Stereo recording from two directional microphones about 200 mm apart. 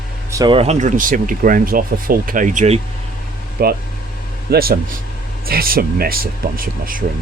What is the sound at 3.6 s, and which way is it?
Speech, 50° right (ahead or behind).